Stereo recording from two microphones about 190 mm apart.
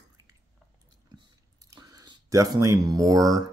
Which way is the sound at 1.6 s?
20° right (ahead or behind).